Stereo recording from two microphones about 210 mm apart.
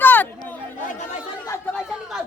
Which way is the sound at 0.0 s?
10° left (ahead or behind).